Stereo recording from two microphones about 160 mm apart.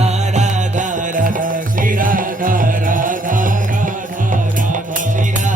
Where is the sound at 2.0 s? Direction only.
60° right (ahead or behind).